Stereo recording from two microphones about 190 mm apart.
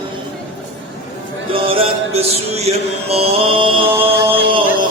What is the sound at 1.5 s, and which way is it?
Music, 30° right (ahead or behind).